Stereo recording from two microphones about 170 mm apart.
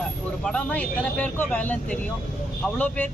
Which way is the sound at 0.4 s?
5° left (ahead or behind).